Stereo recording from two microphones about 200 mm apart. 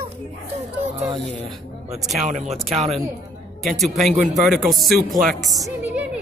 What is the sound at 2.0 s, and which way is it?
Speech, centre (ahead or behind).